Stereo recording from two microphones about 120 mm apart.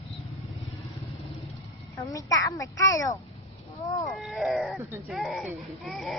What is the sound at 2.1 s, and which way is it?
A child's voice, 30° left (ahead or behind).